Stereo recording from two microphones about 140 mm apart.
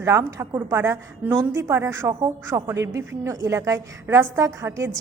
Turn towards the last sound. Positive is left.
turn(degrees=-20)  # may be behind; listen again after turning